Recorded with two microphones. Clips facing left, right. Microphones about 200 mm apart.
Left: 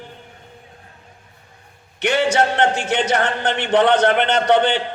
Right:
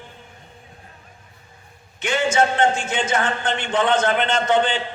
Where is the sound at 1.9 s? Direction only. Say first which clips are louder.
Left 2 dB; 65° left (ahead or behind).